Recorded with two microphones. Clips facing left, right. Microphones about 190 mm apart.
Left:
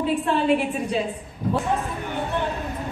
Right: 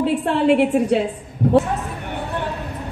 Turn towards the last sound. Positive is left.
turn(degrees=-65)  # may be behind; listen again after turning